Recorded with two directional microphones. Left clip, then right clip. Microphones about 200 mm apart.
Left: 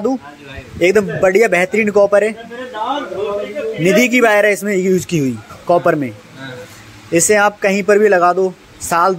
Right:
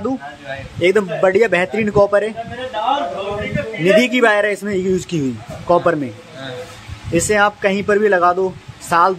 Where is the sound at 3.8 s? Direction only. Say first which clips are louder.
Left 1 dB; 15° left (ahead or behind).